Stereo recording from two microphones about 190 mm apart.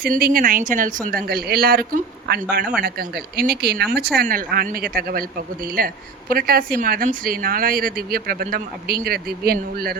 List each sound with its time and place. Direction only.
0.0 s speech: 55° right (ahead or behind)